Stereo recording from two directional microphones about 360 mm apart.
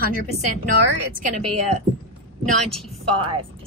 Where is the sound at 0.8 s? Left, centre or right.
Centre.